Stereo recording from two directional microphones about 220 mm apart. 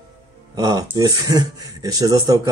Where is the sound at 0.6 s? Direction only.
15° right (ahead or behind).